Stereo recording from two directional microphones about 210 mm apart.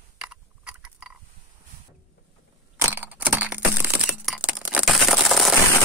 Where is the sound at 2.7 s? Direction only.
10° right (ahead or behind).